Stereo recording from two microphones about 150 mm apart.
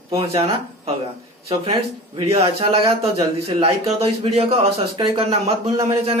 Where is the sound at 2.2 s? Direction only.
40° right (ahead or behind).